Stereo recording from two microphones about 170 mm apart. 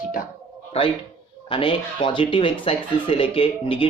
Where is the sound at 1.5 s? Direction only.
30° left (ahead or behind).